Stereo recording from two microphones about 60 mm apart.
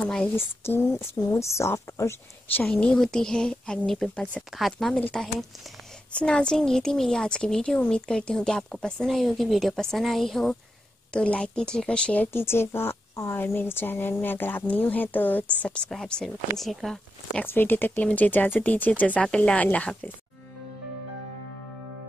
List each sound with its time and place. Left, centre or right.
0.6 s speech: left
1.4 s a woman's voice: left
2.6 s a woman's voice: centre
4.1 s speech: centre
4.4 s a woman's voice: centre
11.1 s a woman's voice: centre
12.3 s a woman's voice: left
13.4 s speech: left
15.6 s a woman's voice: centre
17.5 s speech: left